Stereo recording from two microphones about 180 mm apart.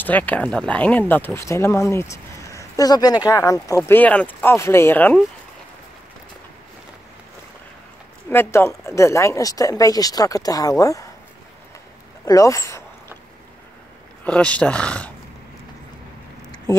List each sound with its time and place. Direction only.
0.0 s speech: 10° left (ahead or behind)
8.3 s speech: 15° left (ahead or behind)
12.3 s speech: 15° left (ahead or behind)
14.2 s speech: 5° left (ahead or behind)